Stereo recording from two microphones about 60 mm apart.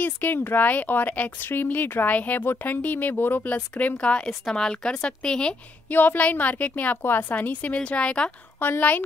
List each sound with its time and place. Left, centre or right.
0.0 s a woman's voice: left; by 5.6 s centre
5.9 s a woman's voice: left
8.5 s speech: left